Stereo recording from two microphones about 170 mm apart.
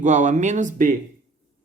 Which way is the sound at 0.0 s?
45° right (ahead or behind).